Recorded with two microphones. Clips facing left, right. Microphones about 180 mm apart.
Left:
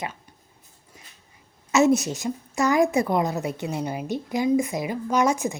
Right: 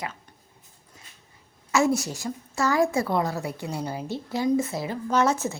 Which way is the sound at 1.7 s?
20° left (ahead or behind).